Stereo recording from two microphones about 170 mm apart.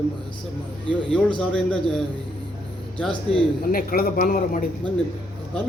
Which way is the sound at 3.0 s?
5° left (ahead or behind).